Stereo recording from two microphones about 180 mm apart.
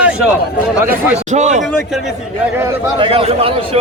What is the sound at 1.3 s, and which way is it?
Speech, 40° right (ahead or behind).